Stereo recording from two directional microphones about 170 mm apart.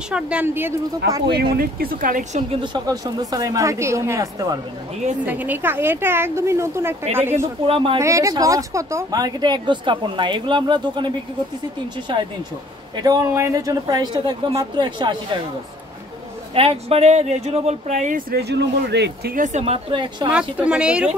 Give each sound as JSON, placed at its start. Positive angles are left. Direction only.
{"t": 0.1, "sound": "a woman's voice", "side_deg": -10}
{"t": 1.6, "sound": "speech", "side_deg": -60}
{"t": 2.5, "sound": "speech", "side_deg": -25}
{"t": 5.2, "sound": "a woman's voice", "side_deg": -10}
{"t": 7.6, "sound": "speech", "side_deg": -30}
{"t": 8.0, "sound": "speech", "side_deg": -20}
{"t": 16.5, "sound": "speech", "side_deg": -35}
{"t": 18.3, "sound": "speech", "side_deg": -75}
{"t": 19.3, "sound": "speech", "side_deg": -45}
{"t": 20.2, "sound": "a woman's voice", "side_deg": -5}